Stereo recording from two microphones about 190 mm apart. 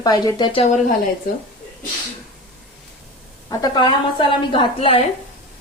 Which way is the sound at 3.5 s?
25° left (ahead or behind).